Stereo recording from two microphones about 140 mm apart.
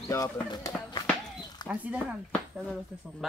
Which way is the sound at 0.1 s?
25° left (ahead or behind).